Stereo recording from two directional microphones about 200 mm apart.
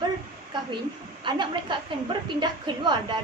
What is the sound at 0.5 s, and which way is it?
A woman's voice, 20° right (ahead or behind).